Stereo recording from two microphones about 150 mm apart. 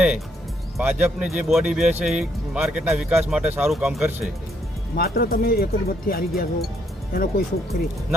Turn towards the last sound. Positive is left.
turn(degrees=80)